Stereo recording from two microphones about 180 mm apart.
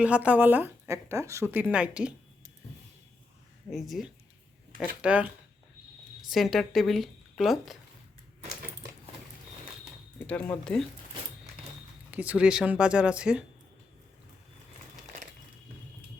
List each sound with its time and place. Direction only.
0.0 s speech: 5° right (ahead or behind)
3.7 s speech: centre (ahead or behind)
6.3 s speech: centre (ahead or behind)
10.2 s speech: 10° left (ahead or behind)
12.1 s speech: 10° right (ahead or behind)